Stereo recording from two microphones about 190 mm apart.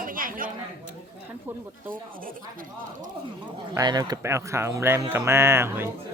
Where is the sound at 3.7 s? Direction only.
20° right (ahead or behind).